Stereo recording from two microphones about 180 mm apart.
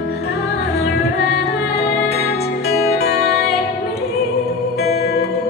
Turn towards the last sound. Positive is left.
turn(degrees=60)  # may be behind; listen again after turning